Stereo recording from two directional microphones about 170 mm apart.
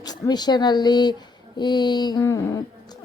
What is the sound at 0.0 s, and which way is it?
A woman's voice, 25° left (ahead or behind).